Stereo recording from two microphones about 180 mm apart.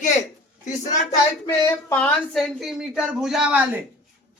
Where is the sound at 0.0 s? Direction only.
45° left (ahead or behind).